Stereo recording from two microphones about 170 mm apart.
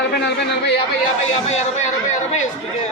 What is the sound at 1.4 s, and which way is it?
Speech, 40° left (ahead or behind).